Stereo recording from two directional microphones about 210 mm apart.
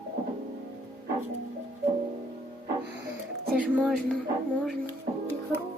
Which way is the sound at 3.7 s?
Centre (ahead or behind).